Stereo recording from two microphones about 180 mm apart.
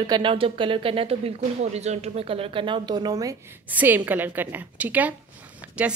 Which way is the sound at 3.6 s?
10° right (ahead or behind).